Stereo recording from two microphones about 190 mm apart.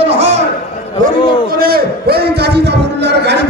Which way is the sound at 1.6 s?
55° right (ahead or behind).